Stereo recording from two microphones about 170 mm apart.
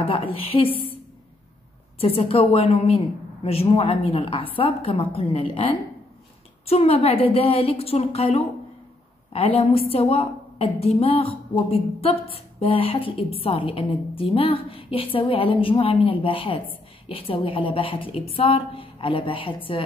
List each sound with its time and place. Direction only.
0.0 s a woman's voice: 35° left (ahead or behind)
0.7 s a woman's voice: 10° left (ahead or behind)
2.0 s a woman's voice: 35° left (ahead or behind)